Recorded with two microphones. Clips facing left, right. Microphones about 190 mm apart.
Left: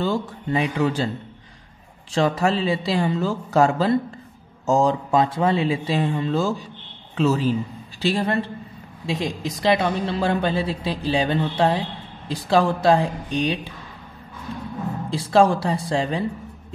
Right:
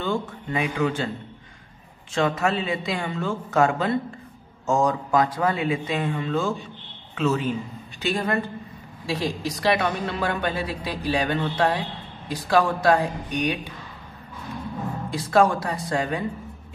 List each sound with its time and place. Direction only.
0.0 s a man's voice: 35° left (ahead or behind)
2.1 s speech: 35° left (ahead or behind)
9.0 s a woman's voice: 20° left (ahead or behind)
15.3 s a woman's voice: 30° left (ahead or behind)